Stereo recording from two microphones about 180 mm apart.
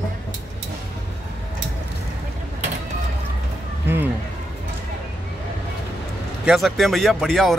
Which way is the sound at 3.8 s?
10° right (ahead or behind).